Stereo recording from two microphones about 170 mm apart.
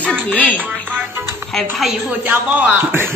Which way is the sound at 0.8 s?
10° right (ahead or behind).